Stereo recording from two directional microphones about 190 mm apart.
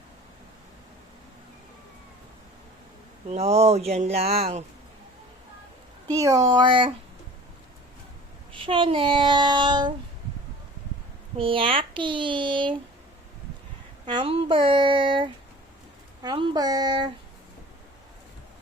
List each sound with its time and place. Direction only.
3.2 s speech: 35° right (ahead or behind)
6.1 s child singing: 20° right (ahead or behind)
8.5 s child singing: 25° right (ahead or behind)
11.3 s child singing: 30° right (ahead or behind)
14.0 s child singing: 25° right (ahead or behind)